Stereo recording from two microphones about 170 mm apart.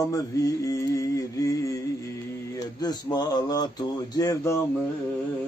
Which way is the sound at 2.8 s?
25° left (ahead or behind).